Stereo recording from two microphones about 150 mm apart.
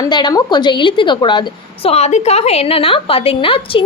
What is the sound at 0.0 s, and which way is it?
A woman's voice, 30° left (ahead or behind).